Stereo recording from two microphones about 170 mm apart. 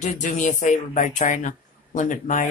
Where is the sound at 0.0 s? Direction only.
45° left (ahead or behind).